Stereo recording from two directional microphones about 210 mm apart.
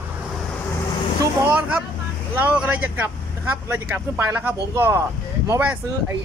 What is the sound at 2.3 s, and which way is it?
Speech, 10° right (ahead or behind).